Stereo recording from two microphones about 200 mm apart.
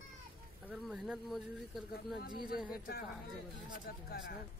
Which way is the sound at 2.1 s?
45° left (ahead or behind).